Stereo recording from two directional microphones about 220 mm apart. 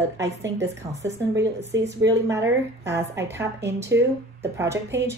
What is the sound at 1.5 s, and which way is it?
Speech, 50° right (ahead or behind).